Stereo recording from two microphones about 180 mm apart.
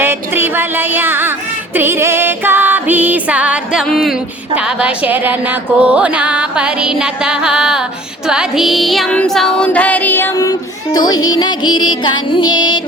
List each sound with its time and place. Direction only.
0.0 s music: 10° right (ahead or behind); by 12.8 s 25° left (ahead or behind)